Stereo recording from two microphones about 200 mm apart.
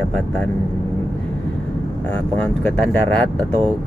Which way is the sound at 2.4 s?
10° left (ahead or behind).